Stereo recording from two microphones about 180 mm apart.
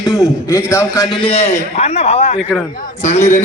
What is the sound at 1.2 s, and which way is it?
A man's voice, 35° left (ahead or behind).